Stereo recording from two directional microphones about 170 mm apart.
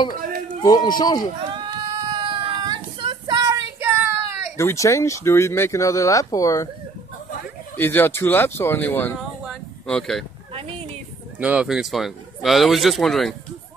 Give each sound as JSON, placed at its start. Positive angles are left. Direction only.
{"t": 0.6, "sound": "speech", "side_deg": 25}
{"t": 1.5, "sound": "a sound", "side_deg": -30}
{"t": 4.6, "sound": "speech", "side_deg": 20}
{"t": 7.7, "sound": "speech", "side_deg": 10}
{"t": 9.2, "sound": "a sound", "side_deg": 0}
{"t": 11.3, "sound": "speech", "side_deg": -10}